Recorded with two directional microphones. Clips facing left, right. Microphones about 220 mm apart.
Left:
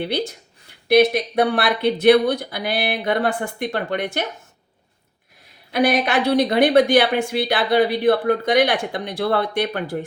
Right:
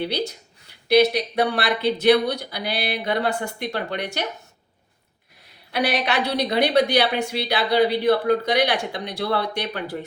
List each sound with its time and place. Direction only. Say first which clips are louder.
0.9 s a woman's voice: left 2 dB; 55° left (ahead or behind)
5.7 s a woman's voice: left 4 dB; 50° left (ahead or behind)